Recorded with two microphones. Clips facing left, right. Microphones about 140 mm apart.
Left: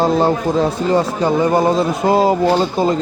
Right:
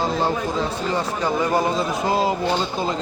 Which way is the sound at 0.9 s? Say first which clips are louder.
Left 7 dB; 30° left (ahead or behind).